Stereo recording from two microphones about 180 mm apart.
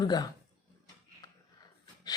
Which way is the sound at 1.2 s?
20° left (ahead or behind).